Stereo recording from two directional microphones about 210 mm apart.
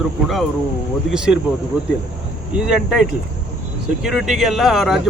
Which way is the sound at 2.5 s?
5° right (ahead or behind).